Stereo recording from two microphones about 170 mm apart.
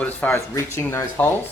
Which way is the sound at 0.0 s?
10° left (ahead or behind).